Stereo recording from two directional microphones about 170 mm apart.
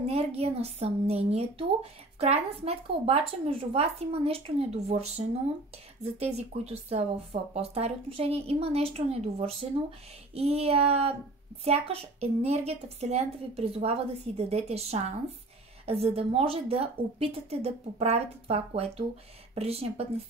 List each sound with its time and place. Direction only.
0.0 s a woman's voice: 35° right (ahead or behind)